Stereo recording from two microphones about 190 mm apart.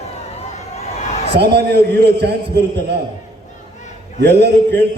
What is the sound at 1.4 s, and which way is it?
Speech, 60° right (ahead or behind).